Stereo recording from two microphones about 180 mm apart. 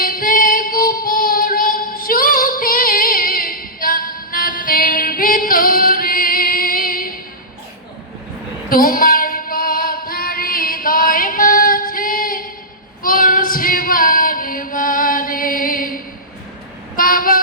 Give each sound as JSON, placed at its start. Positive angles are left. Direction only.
{"t": 0.0, "sound": "music", "side_deg": 50}
{"t": 8.7, "sound": "female singing", "side_deg": 50}
{"t": 17.0, "sound": "vehicle", "side_deg": 50}